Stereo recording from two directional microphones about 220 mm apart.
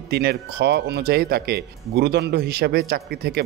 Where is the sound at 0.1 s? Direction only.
45° right (ahead or behind).